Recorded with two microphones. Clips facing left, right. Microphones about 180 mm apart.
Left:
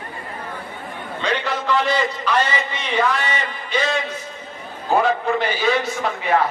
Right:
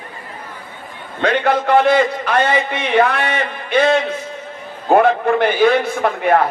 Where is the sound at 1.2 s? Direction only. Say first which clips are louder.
Right 8 dB; 55° right (ahead or behind).